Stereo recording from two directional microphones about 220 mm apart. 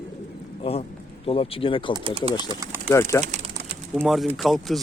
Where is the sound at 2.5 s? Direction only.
15° right (ahead or behind).